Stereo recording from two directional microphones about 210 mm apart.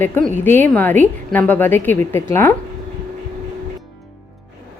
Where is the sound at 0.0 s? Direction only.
10° left (ahead or behind).